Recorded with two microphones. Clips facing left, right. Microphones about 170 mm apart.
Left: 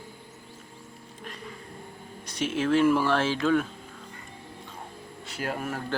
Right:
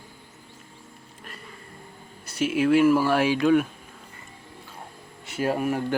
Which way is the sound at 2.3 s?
10° right (ahead or behind).